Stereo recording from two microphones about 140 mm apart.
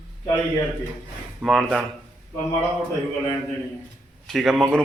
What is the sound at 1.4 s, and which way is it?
Speech, centre (ahead or behind).